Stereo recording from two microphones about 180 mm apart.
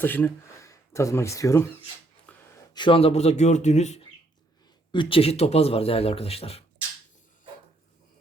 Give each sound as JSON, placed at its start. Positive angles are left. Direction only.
{"t": 0.0, "sound": "speech", "side_deg": 10}
{"t": 2.3, "sound": "a sound", "side_deg": 5}
{"t": 2.7, "sound": "speech", "side_deg": 30}
{"t": 4.9, "sound": "speech", "side_deg": 30}